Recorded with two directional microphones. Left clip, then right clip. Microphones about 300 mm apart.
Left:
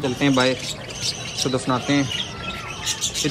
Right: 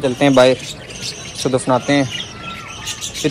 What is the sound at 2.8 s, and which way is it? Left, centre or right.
Bird, left.